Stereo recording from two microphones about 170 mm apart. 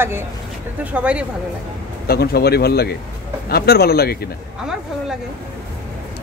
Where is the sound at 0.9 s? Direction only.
5° right (ahead or behind).